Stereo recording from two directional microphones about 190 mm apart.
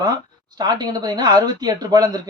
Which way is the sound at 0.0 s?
20° right (ahead or behind).